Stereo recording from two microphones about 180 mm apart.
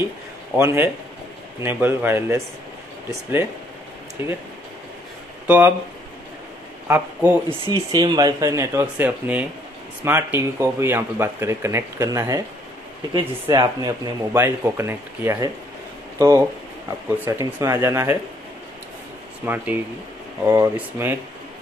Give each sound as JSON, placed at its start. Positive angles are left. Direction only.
{"t": 0.6, "sound": "speech", "side_deg": -15}
{"t": 5.5, "sound": "speech", "side_deg": -10}
{"t": 6.9, "sound": "speech", "side_deg": -10}
{"t": 7.7, "sound": "speech", "side_deg": -25}
{"t": 19.4, "sound": "speech", "side_deg": -10}